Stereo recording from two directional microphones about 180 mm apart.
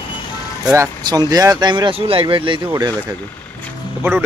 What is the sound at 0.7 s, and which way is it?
Speech, 20° right (ahead or behind).